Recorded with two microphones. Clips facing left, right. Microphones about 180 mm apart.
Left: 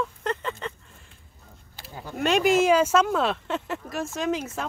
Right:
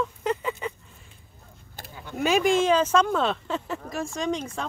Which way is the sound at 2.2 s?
Centre (ahead or behind).